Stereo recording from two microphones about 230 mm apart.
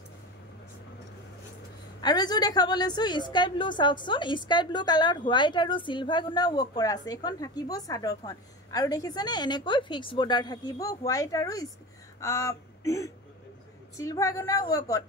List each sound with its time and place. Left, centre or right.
2.0 s a woman's voice: centre